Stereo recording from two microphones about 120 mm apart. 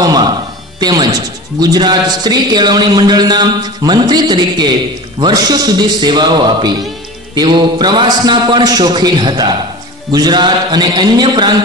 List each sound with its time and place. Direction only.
0.0 s music: 35° right (ahead or behind)
0.7 s a man's voice: 35° right (ahead or behind)